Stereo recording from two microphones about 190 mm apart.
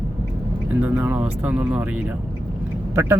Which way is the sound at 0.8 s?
10° right (ahead or behind).